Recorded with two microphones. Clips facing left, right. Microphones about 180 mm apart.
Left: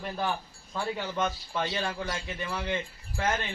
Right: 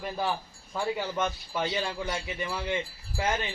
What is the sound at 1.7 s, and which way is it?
Speech, 30° right (ahead or behind).